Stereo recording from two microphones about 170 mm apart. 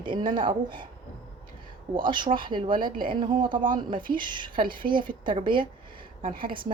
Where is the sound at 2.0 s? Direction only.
25° right (ahead or behind).